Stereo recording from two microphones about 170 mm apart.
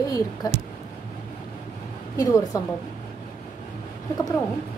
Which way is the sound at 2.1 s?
20° left (ahead or behind).